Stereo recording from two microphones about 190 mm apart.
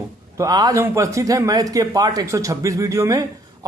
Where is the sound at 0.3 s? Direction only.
20° right (ahead or behind).